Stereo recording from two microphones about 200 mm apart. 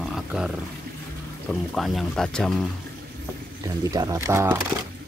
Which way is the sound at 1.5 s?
Centre (ahead or behind).